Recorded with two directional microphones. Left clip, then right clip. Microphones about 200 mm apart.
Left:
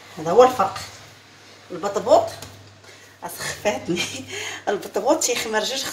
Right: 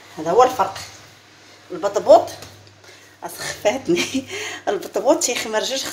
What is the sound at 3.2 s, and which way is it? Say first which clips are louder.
Speech: right 3 dB; 50° right (ahead or behind).